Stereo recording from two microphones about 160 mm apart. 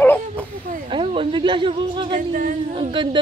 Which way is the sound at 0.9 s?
35° right (ahead or behind).